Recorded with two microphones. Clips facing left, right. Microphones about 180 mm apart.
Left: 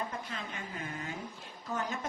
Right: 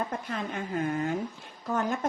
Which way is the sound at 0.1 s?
55° right (ahead or behind).